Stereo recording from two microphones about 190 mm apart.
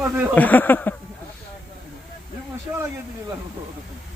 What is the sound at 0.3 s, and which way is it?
Speech, 10° left (ahead or behind).